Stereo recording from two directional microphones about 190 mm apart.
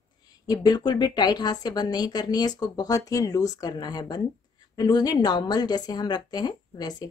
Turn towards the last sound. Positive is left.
turn(degrees=20)  # may be behind; listen again after turning